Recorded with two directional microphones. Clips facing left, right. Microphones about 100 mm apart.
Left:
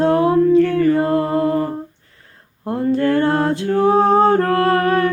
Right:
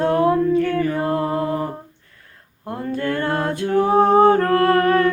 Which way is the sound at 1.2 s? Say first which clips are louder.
Left 4 dB; 20° right (ahead or behind).